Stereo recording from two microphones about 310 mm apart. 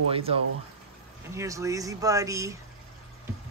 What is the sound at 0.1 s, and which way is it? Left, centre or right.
A man's voice, centre.